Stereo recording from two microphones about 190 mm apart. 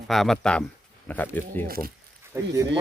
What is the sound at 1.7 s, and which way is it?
Speech, 50° right (ahead or behind).